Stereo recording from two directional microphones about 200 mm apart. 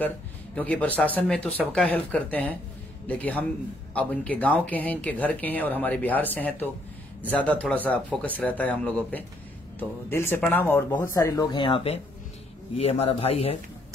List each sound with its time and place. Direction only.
0.6 s a man's voice: 5° left (ahead or behind); by 13.6 s 30° left (ahead or behind)